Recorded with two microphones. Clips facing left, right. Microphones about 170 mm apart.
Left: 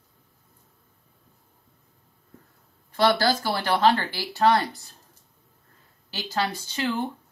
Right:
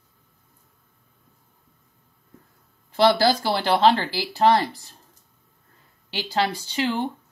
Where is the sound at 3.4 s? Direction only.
25° right (ahead or behind).